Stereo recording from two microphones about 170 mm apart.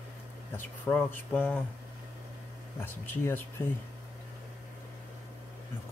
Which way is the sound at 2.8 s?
10° left (ahead or behind).